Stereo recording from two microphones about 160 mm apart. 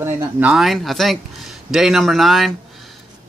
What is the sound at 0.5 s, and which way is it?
Speech, centre (ahead or behind).